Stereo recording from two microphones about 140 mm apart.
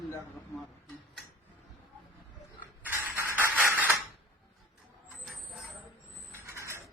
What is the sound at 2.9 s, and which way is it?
Music, 15° right (ahead or behind).